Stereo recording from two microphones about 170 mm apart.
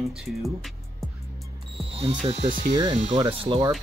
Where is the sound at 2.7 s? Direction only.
25° right (ahead or behind).